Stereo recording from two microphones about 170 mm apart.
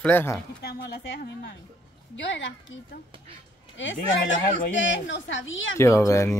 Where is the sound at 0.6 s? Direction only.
75° left (ahead or behind).